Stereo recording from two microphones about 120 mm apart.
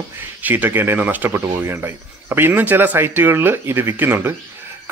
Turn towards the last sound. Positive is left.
turn(degrees=-15)  # may be behind; listen again after turning